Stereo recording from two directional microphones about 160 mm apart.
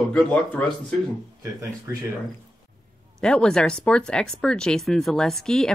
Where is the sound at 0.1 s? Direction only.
5° left (ahead or behind).